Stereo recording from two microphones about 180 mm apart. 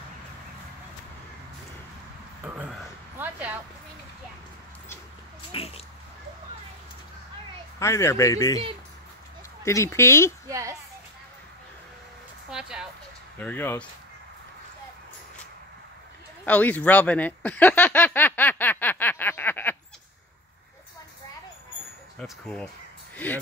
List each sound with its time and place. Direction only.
2.4 s a sound: 10° right (ahead or behind)
3.2 s speech: 10° right (ahead or behind)
5.5 s a sound: 35° left (ahead or behind)
7.8 s speech: 15° left (ahead or behind)
9.7 s speech: 15° left (ahead or behind)
10.5 s speech: 20° right (ahead or behind)
12.4 s speech: 5° right (ahead or behind)
13.4 s speech: 10° left (ahead or behind)
16.4 s speech: 10° left (ahead or behind)
22.2 s speech: 5° left (ahead or behind)